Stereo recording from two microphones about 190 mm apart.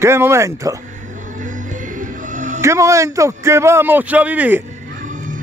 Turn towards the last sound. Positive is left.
turn(degrees=-40)  # may be behind; listen again after turning